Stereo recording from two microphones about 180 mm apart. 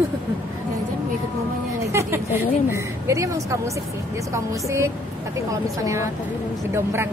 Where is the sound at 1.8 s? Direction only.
15° right (ahead or behind).